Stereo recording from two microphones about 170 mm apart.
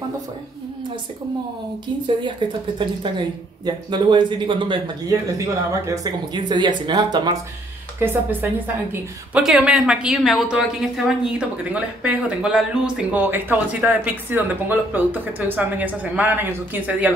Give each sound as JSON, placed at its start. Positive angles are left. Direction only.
{"t": 2.4, "sound": "speech", "side_deg": -30}
{"t": 8.0, "sound": "a woman's voice", "side_deg": -10}